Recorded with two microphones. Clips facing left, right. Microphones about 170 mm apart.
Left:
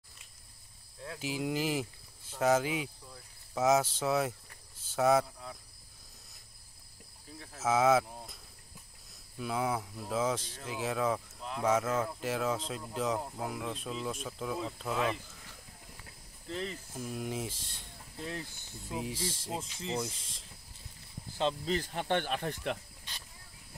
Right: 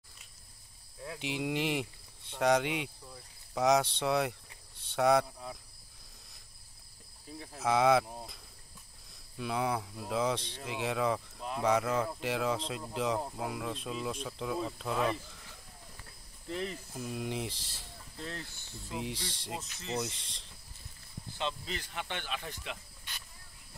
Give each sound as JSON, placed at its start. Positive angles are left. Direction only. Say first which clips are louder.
{"t": 1.0, "sound": "speech", "louder": "even", "side_deg": 0}
{"t": 5.2, "sound": "speech", "louder": "right 2 dB", "side_deg": -10}
{"t": 7.6, "sound": "speech", "louder": "even", "side_deg": 0}
{"t": 9.4, "sound": "speech", "louder": "even", "side_deg": 0}
{"t": 16.4, "sound": "speech", "louder": "right 1 dB", "side_deg": -10}
{"t": 16.9, "sound": "speech", "louder": "left 1 dB", "side_deg": 0}
{"t": 18.1, "sound": "speech", "louder": "left 2 dB", "side_deg": 15}
{"t": 18.9, "sound": "speech", "louder": "left 2 dB", "side_deg": 0}
{"t": 19.6, "sound": "speech", "louder": "left 1 dB", "side_deg": 30}
{"t": 20.0, "sound": "speech", "louder": "even", "side_deg": 0}
{"t": 21.4, "sound": "speech", "louder": "left 6 dB", "side_deg": 40}